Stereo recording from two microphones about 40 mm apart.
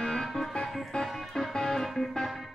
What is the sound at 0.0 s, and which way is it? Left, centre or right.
Music, centre.